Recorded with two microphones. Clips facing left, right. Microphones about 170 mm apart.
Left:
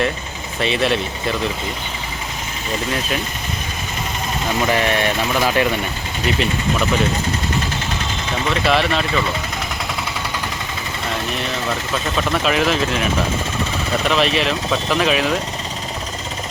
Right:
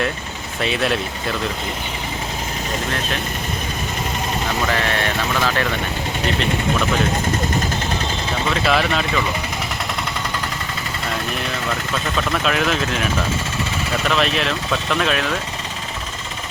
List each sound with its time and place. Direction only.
0.6 s speech: centre (ahead or behind)
4.7 s speech: 15° left (ahead or behind)
8.6 s speech: centre (ahead or behind)
12.1 s speech: 5° left (ahead or behind)